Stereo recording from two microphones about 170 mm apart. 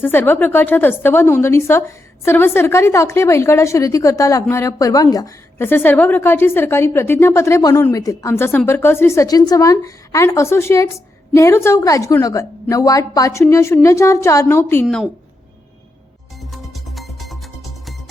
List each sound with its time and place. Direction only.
0.0 s a woman's voice: 10° left (ahead or behind)
14.8 s speech: centre (ahead or behind)
16.4 s music: centre (ahead or behind)